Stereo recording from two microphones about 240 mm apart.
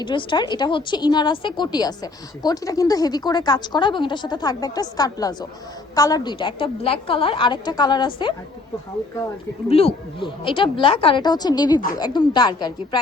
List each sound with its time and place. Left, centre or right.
0.0 s a woman's voice: centre
9.6 s a woman's voice: left